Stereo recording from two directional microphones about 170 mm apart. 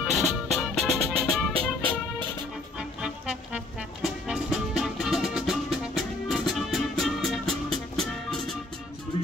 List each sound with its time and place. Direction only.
0.0 s music: centre (ahead or behind)
3.0 s music: 5° right (ahead or behind)